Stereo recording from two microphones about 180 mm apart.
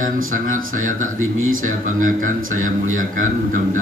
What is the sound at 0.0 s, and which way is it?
A man's voice, 50° right (ahead or behind).